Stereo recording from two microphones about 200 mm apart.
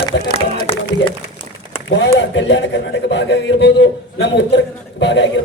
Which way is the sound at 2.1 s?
65° left (ahead or behind).